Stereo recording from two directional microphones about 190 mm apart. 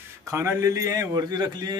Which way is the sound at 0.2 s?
15° right (ahead or behind).